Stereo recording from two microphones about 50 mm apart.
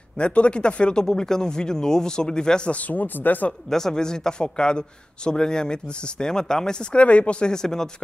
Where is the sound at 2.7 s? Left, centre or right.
Left.